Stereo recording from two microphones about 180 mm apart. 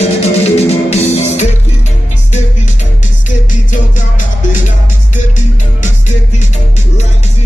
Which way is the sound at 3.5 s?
45° left (ahead or behind).